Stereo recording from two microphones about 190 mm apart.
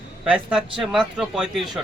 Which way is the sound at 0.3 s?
5° right (ahead or behind).